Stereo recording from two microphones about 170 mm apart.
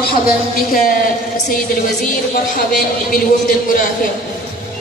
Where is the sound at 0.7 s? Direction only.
55° left (ahead or behind).